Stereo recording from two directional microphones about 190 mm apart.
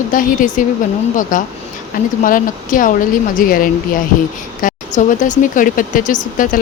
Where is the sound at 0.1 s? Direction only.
45° left (ahead or behind).